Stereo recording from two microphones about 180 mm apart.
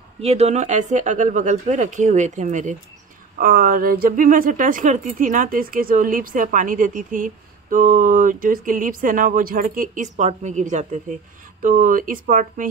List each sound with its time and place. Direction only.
0.2 s speech: 35° right (ahead or behind)